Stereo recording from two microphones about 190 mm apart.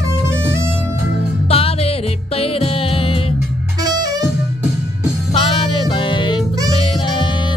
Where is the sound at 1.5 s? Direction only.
30° left (ahead or behind).